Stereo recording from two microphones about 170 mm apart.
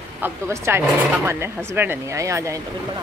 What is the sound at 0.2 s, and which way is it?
Speech, 15° right (ahead or behind).